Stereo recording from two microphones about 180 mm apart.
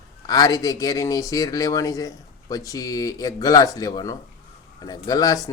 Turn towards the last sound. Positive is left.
turn(degrees=20)  # may be behind; listen again after turning